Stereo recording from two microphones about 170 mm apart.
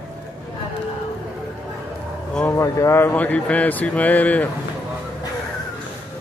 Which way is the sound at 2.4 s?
15° left (ahead or behind).